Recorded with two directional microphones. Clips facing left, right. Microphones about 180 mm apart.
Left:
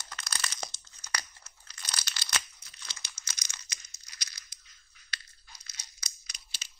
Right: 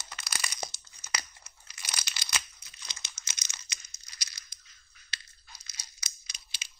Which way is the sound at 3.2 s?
20° right (ahead or behind).